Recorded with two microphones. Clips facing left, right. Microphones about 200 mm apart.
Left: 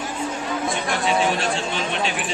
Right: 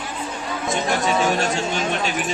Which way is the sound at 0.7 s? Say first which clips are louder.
Right 4 dB; 45° right (ahead or behind).